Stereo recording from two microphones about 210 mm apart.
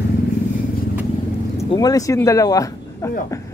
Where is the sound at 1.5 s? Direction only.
15° left (ahead or behind).